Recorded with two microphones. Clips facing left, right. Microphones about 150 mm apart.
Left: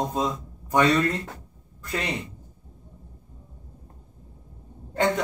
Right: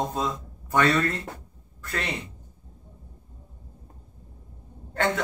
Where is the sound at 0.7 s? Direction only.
15° left (ahead or behind).